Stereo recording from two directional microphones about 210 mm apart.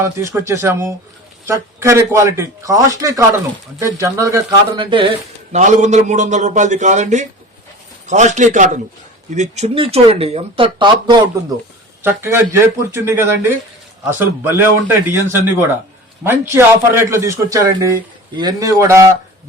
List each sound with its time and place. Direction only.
0.0 s a man's voice: 15° right (ahead or behind)
12.0 s a man's voice: 10° right (ahead or behind)